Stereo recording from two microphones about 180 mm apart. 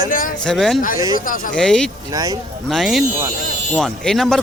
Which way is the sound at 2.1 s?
20° right (ahead or behind).